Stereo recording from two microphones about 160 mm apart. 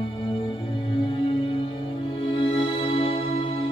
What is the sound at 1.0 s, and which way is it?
Music, 30° left (ahead or behind).